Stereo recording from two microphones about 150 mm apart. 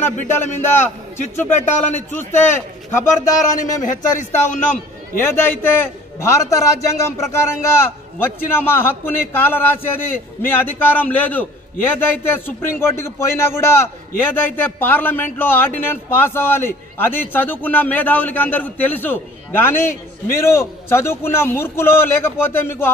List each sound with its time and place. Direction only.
0.0 s a man's voice: 15° left (ahead or behind)
2.1 s a man's voice: 15° left (ahead or behind)
3.2 s speech: 60° left (ahead or behind)
5.2 s a man's voice: 15° left (ahead or behind)